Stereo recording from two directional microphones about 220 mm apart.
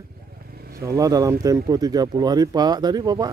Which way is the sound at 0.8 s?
15° right (ahead or behind).